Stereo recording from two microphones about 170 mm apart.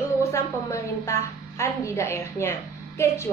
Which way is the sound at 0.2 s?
15° left (ahead or behind).